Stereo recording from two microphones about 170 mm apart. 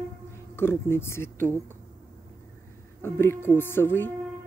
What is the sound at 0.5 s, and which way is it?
Speech, 15° left (ahead or behind).